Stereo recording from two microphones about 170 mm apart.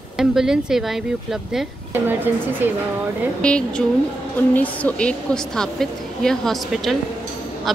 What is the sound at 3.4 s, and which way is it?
A woman's voice, 5° left (ahead or behind).